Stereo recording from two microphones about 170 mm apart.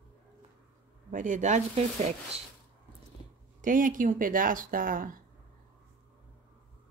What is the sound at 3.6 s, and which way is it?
Speech, 50° right (ahead or behind).